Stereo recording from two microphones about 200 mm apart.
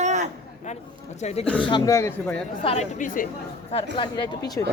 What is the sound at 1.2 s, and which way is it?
Speech, 35° left (ahead or behind).